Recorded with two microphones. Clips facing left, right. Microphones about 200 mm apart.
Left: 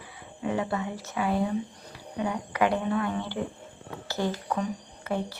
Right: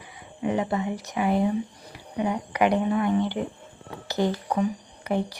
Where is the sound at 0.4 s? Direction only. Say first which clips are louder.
Right 3 dB; 20° right (ahead or behind).